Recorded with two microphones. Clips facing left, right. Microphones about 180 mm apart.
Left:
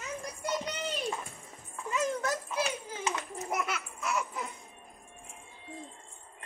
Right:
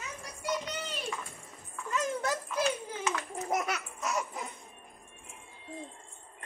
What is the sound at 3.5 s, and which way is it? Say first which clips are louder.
Laughter: right 2 dB; 40° right (ahead or behind).